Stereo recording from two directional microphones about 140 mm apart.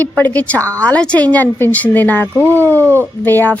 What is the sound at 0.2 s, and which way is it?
Speech, 10° left (ahead or behind).